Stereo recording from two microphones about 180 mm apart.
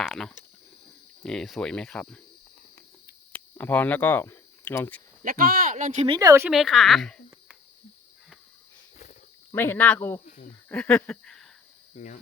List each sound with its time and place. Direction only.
0.0 s a sound: centre (ahead or behind)
1.2 s cricket: 5° left (ahead or behind)
3.3 s speech: 10° left (ahead or behind)
5.2 s speech: 50° right (ahead or behind)
5.7 s speech: 40° right (ahead or behind)
6.1 s speech: 15° right (ahead or behind)
6.5 s cricket: centre (ahead or behind)
9.5 s speech: 10° left (ahead or behind)
10.2 s speech: 50° left (ahead or behind)
10.7 s a sound: 5° left (ahead or behind)
11.9 s speech: 45° left (ahead or behind)